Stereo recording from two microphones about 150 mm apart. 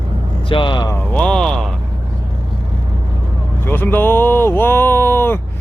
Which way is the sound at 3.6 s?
15° left (ahead or behind).